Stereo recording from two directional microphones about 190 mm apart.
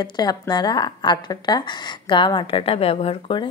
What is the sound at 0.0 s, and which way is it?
A woman's voice, 20° left (ahead or behind).